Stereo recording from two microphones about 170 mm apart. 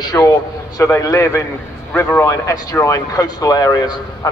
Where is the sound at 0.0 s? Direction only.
20° left (ahead or behind).